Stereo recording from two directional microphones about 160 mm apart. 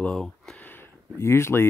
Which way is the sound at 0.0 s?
5° left (ahead or behind).